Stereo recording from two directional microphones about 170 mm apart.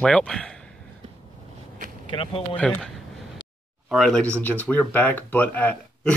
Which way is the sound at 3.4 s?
25° left (ahead or behind).